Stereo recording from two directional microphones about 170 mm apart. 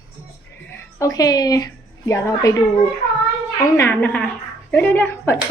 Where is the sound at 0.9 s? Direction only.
20° left (ahead or behind).